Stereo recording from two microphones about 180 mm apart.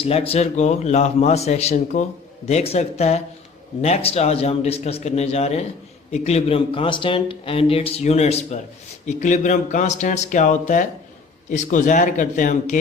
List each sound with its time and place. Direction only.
0.0 s speech: 35° left (ahead or behind)